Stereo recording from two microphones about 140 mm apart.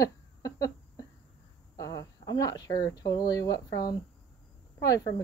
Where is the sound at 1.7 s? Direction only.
25° left (ahead or behind).